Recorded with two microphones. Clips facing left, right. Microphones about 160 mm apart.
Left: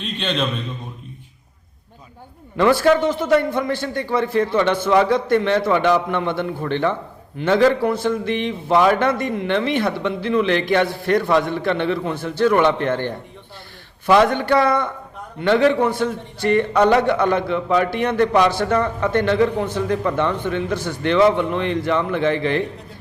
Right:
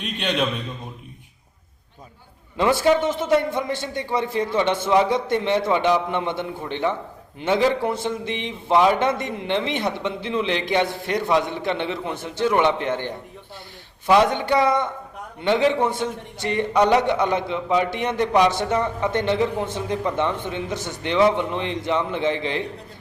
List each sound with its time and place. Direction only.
0.0 s a man's voice: 10° right (ahead or behind)
2.6 s a man's voice: 20° right (ahead or behind)